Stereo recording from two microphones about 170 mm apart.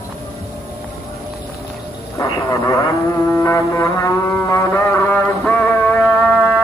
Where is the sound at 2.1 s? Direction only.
20° left (ahead or behind).